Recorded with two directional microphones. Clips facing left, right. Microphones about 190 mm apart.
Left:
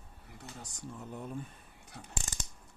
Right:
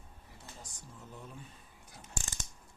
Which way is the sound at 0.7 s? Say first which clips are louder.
Left 7 dB; 65° left (ahead or behind).